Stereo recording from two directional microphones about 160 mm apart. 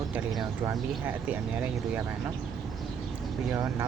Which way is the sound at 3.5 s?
15° right (ahead or behind).